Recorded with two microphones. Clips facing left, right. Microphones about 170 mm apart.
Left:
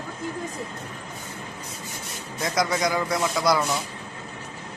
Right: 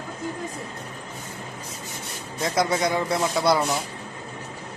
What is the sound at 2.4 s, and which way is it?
Speech, 30° right (ahead or behind).